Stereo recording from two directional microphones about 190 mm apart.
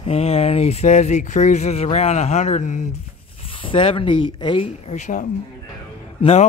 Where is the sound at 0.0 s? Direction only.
30° left (ahead or behind).